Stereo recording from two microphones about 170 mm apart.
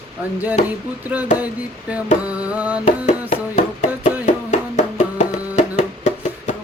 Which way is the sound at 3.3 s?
45° left (ahead or behind).